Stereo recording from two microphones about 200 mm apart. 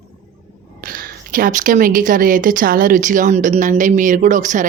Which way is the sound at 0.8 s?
45° right (ahead or behind).